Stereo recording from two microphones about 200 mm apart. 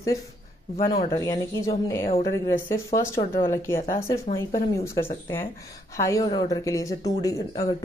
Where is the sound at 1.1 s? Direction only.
15° left (ahead or behind).